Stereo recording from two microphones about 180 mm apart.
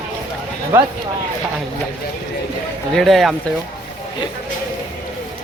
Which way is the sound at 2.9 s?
Centre (ahead or behind).